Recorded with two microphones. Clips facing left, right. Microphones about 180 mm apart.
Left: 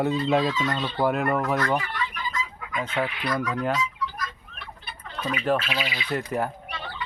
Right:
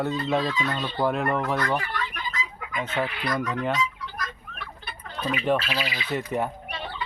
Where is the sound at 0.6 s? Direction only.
Centre (ahead or behind).